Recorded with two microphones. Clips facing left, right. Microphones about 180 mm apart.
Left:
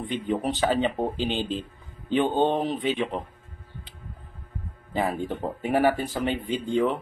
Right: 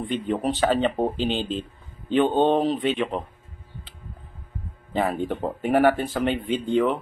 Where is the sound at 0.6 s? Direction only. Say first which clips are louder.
Right 3 dB; 15° left (ahead or behind).